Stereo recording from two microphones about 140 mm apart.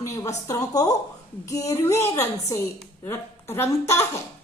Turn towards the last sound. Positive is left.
turn(degrees=20)  # may be behind; listen again after turning